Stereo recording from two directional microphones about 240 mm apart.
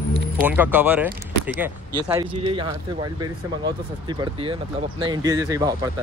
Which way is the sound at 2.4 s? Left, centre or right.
Right.